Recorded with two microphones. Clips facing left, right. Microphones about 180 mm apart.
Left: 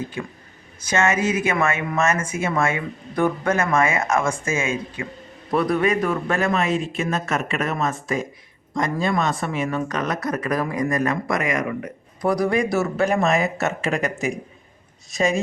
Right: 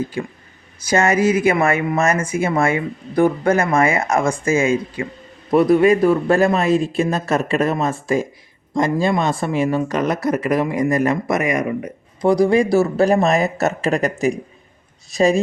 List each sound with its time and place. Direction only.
0.2 s speech: 30° right (ahead or behind)
5.5 s speech: 25° right (ahead or behind)